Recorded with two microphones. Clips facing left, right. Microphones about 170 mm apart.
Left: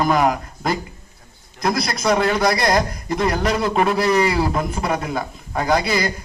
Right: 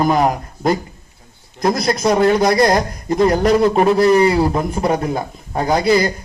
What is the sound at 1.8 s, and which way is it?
A man's voice, 25° right (ahead or behind).